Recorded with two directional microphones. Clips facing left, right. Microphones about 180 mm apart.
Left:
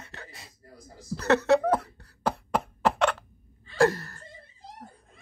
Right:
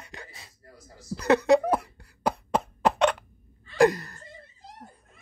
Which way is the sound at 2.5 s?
20° right (ahead or behind).